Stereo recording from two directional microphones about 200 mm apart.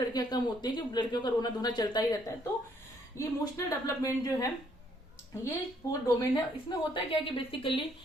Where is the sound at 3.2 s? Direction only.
15° left (ahead or behind).